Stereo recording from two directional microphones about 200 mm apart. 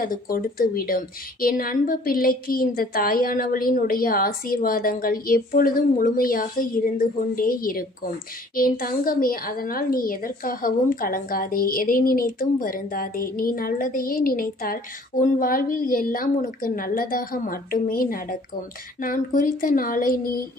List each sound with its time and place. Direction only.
0.0 s a woman's voice: 45° left (ahead or behind)